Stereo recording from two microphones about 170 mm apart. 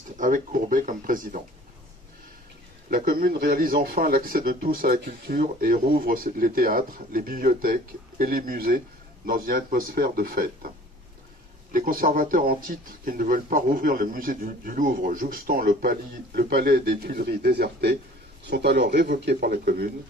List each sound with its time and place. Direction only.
0.2 s speech: 50° right (ahead or behind)
2.9 s a man's voice: 55° right (ahead or behind)
11.7 s a man's voice: 55° right (ahead or behind)